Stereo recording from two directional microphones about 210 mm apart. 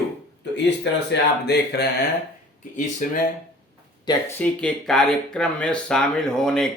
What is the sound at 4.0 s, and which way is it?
Speech, 15° left (ahead or behind).